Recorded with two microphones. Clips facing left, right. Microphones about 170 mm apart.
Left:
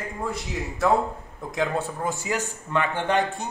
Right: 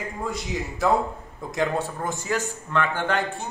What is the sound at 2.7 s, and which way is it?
Speech, 15° left (ahead or behind).